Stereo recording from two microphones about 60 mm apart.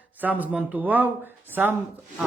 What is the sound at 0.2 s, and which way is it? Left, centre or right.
Speech, right.